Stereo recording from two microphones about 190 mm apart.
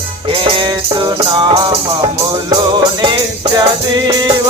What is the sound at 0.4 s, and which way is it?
Music, 25° right (ahead or behind).